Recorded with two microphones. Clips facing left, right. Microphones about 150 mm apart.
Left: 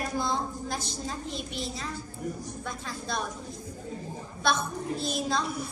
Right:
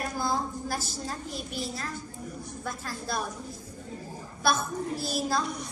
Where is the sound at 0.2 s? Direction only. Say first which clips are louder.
Right 1 dB; 5° right (ahead or behind).